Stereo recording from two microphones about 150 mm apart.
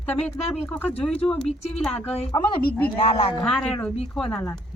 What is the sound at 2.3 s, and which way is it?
Speech, 30° left (ahead or behind).